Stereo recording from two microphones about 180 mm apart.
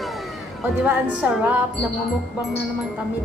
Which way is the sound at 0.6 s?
10° right (ahead or behind).